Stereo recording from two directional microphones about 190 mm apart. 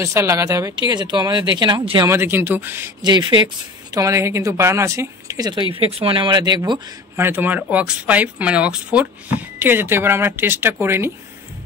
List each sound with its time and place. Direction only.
0.0 s speech: 15° right (ahead or behind)
2.0 s speech: 10° right (ahead or behind)
3.0 s speech: 25° right (ahead or behind)